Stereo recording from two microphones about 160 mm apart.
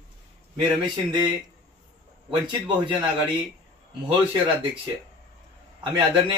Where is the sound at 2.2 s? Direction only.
35° right (ahead or behind).